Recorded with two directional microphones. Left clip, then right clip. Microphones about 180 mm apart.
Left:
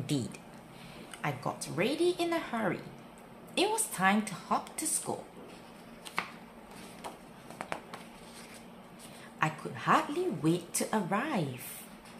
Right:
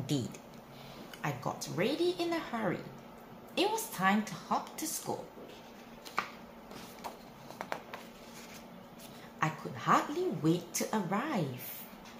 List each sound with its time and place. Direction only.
0.0 s speech: 10° left (ahead or behind)
1.2 s speech: 25° left (ahead or behind)
7.5 s a sound: centre (ahead or behind)
9.4 s speech: 30° left (ahead or behind)